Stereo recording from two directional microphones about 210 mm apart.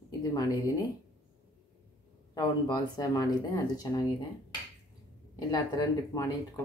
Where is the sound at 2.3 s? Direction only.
20° left (ahead or behind).